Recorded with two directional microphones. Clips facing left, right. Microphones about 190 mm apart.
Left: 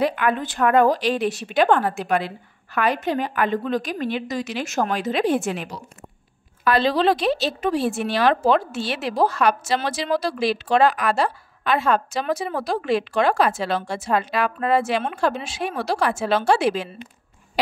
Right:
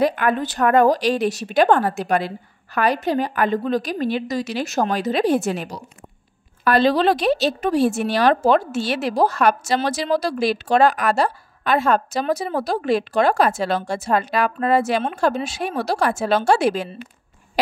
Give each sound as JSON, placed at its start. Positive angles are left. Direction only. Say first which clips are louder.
{"t": 0.0, "sound": "a woman's voice", "louder": "right 2 dB", "side_deg": -45}